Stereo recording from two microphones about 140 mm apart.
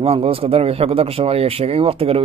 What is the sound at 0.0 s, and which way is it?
Speech, 45° right (ahead or behind).